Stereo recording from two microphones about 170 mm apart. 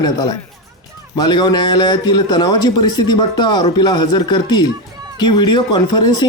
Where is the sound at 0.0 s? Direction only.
25° left (ahead or behind).